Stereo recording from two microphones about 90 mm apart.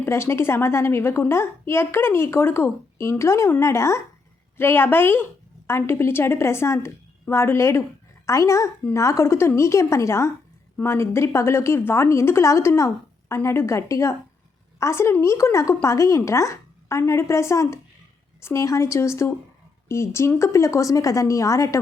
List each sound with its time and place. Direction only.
0.0 s a woman's voice: 30° left (ahead or behind)